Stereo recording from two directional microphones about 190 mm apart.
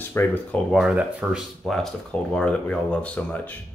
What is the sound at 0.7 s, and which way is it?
Speech, 5° right (ahead or behind).